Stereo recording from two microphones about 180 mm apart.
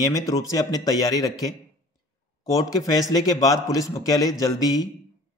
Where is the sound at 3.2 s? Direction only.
20° left (ahead or behind).